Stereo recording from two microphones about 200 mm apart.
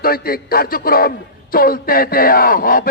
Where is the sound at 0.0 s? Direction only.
50° left (ahead or behind).